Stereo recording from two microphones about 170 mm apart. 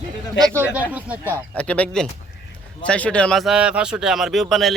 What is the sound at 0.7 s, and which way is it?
Speech, 10° right (ahead or behind).